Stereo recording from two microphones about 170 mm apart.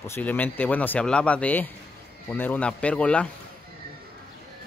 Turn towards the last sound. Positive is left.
turn(degrees=5)  # may be behind; listen again after turning